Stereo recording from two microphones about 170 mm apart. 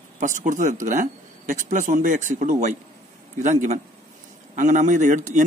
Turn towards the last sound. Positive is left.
turn(degrees=-45)  # may be behind; listen again after turning